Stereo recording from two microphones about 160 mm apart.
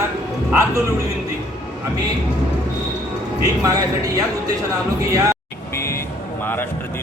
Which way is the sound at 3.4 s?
20° right (ahead or behind).